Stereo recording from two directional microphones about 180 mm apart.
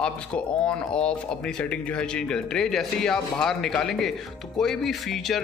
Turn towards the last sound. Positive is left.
turn(degrees=0)  # may be behind; listen again after turning